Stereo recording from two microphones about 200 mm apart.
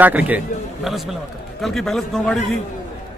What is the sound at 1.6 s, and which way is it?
Speech, centre (ahead or behind).